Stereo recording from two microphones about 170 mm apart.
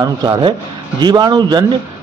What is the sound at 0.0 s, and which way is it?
A man's voice, 25° right (ahead or behind).